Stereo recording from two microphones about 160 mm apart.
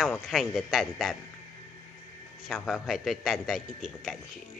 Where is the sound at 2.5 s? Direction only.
Centre (ahead or behind).